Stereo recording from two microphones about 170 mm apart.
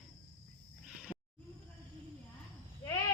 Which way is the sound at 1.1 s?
30° left (ahead or behind).